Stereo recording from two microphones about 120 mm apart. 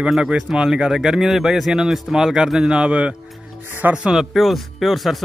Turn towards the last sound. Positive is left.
turn(degrees=0)  # may be behind; listen again after turning